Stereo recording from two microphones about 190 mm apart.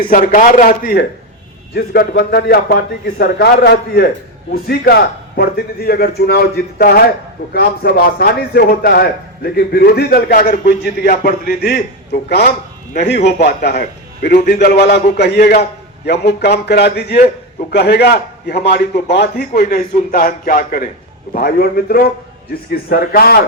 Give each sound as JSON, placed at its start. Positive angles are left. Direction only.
{"t": 0.0, "sound": "a man's voice", "side_deg": 45}